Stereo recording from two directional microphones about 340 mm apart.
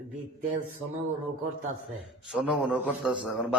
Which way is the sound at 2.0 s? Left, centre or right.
Centre.